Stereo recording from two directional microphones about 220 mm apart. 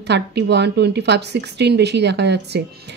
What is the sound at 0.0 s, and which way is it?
A woman's voice, 50° right (ahead or behind).